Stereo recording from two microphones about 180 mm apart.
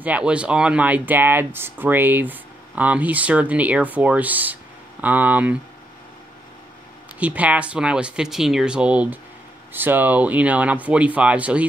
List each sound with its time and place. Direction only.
0.0 s speech: 5° right (ahead or behind)
7.2 s speech: 10° right (ahead or behind)